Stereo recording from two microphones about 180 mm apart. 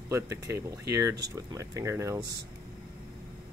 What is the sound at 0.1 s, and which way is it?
Speech, 15° right (ahead or behind).